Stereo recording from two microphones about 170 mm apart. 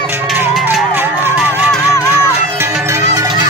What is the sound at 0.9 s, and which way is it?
Music, 10° right (ahead or behind).